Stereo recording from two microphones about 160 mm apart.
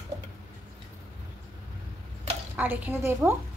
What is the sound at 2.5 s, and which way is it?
Speech, 10° right (ahead or behind).